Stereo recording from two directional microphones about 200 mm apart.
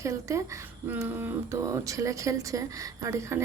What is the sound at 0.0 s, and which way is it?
A woman's voice, 15° right (ahead or behind).